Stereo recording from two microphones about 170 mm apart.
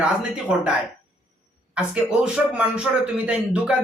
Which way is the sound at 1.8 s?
5° right (ahead or behind).